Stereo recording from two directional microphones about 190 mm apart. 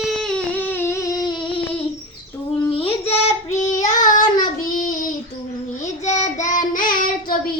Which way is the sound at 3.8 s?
40° left (ahead or behind).